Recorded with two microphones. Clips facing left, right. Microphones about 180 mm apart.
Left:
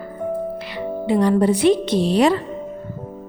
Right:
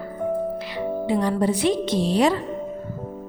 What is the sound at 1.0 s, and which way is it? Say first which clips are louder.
A woman's voice: left 6 dB; 65° left (ahead or behind).